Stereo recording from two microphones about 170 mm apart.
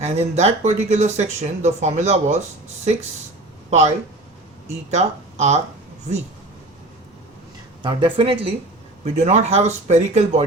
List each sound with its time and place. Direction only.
0.0 s speech: 40° right (ahead or behind)
3.7 s speech: 40° right (ahead or behind)
7.8 s speech: 30° right (ahead or behind)